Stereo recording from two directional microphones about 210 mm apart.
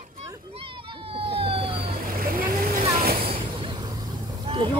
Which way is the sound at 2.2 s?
45° right (ahead or behind).